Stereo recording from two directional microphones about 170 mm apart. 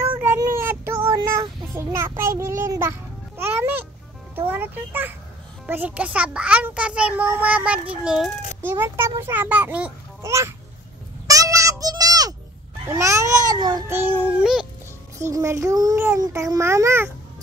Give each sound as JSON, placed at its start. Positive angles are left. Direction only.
{"t": 0.2, "sound": "child singing", "side_deg": -10}
{"t": 1.8, "sound": "a child's voice", "side_deg": -15}
{"t": 8.6, "sound": "a child's voice", "side_deg": -15}
{"t": 11.2, "sound": "a sound", "side_deg": -20}
{"t": 12.8, "sound": "a child's voice", "side_deg": -20}
{"t": 15.1, "sound": "a child's voice", "side_deg": -20}